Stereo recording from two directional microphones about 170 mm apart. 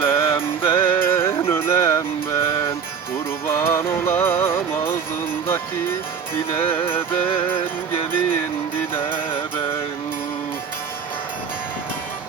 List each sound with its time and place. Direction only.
0.0 s music: 15° left (ahead or behind)
3.4 s music: 15° left (ahead or behind)
5.5 s speech: 15° left (ahead or behind)